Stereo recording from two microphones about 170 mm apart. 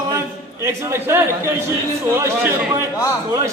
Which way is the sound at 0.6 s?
15° right (ahead or behind).